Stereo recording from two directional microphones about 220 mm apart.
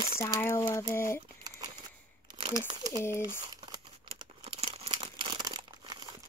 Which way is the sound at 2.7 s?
20° right (ahead or behind).